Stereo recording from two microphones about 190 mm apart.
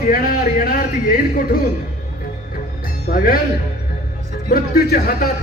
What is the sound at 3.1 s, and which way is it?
Speech, 50° left (ahead or behind).